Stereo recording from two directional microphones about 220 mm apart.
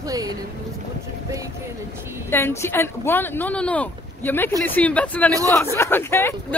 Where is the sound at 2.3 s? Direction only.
10° left (ahead or behind).